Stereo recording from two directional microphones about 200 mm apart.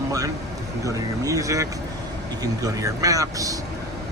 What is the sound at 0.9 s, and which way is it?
Speech, 15° right (ahead or behind).